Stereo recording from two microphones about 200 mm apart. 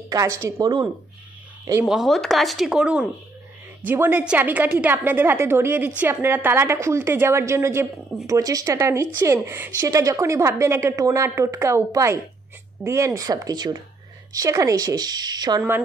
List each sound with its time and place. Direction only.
0.1 s a woman's voice: 15° right (ahead or behind)
1.9 s a woman's voice: centre (ahead or behind)